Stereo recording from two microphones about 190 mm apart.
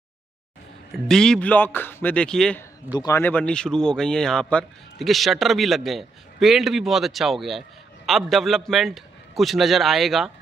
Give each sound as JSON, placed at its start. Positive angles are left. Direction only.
{"t": 0.9, "sound": "a man's voice", "side_deg": 0}
{"t": 2.9, "sound": "speech", "side_deg": 20}